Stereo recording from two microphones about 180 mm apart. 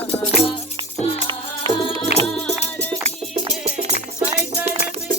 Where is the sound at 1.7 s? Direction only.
30° left (ahead or behind).